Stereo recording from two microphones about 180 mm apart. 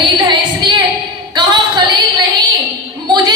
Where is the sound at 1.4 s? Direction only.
25° right (ahead or behind).